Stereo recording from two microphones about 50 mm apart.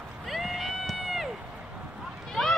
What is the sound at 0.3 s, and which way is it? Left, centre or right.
Crowd, centre.